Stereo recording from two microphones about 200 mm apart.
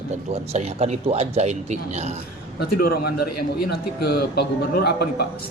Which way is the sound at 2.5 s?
50° left (ahead or behind).